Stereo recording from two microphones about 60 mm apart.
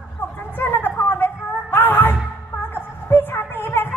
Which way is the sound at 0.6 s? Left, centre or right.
Left.